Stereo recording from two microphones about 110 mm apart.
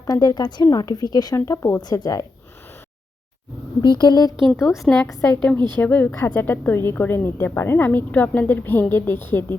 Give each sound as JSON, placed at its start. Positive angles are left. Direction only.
{"t": 0.0, "sound": "speech", "side_deg": 35}
{"t": 1.4, "sound": "speech", "side_deg": 25}
{"t": 3.8, "sound": "speech", "side_deg": 40}
{"t": 4.4, "sound": "a woman's voice", "side_deg": 0}